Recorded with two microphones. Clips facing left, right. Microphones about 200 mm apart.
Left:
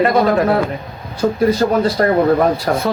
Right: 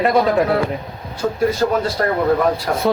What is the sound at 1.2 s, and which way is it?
Speech, 40° left (ahead or behind).